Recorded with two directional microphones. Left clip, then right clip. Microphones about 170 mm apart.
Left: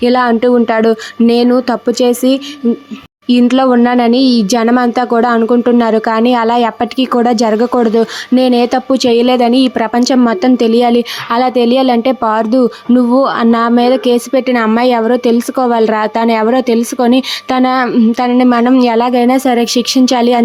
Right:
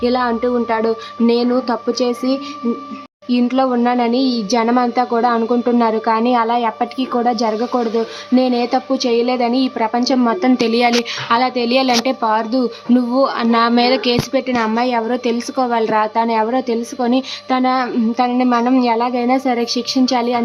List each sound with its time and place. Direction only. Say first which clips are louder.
0.0 s a woman's voice: left 7 dB; 40° left (ahead or behind)